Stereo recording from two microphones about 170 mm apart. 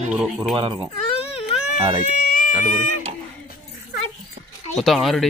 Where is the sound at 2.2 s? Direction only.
50° left (ahead or behind).